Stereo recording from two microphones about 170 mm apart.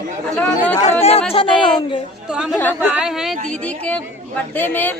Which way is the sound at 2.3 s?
5° right (ahead or behind).